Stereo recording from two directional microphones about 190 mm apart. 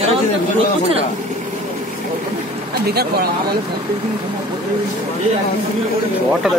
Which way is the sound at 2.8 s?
55° right (ahead or behind).